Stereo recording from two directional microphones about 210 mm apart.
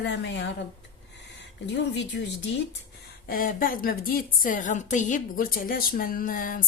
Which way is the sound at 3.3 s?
40° left (ahead or behind).